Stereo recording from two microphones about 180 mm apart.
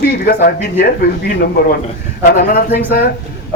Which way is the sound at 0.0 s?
55° left (ahead or behind).